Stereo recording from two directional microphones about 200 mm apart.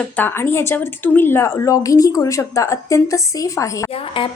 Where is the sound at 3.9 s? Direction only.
25° left (ahead or behind).